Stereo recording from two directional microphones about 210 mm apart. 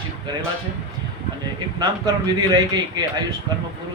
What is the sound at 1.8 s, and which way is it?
A man's voice, 20° right (ahead or behind).